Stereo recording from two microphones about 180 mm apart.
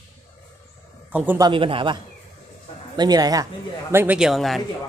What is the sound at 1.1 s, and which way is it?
Speech, 10° right (ahead or behind).